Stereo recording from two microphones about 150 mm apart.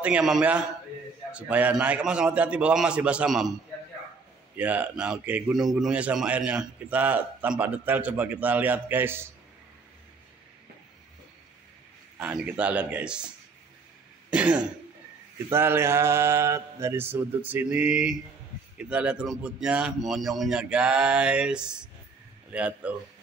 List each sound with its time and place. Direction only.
0.0 s a man's voice: 5° right (ahead or behind)
4.6 s a man's voice: 10° right (ahead or behind)
12.2 s a man's voice: 10° right (ahead or behind)
14.3 s throat clearing: 10° right (ahead or behind)
15.5 s a man's voice: 15° right (ahead or behind)